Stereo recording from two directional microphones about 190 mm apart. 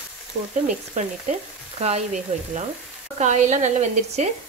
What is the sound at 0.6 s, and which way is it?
Speech, 40° right (ahead or behind).